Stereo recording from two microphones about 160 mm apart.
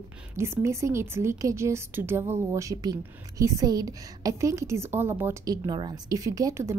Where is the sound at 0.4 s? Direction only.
15° right (ahead or behind).